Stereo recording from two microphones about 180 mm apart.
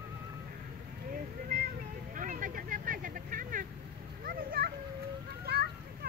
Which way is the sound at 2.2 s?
50° right (ahead or behind).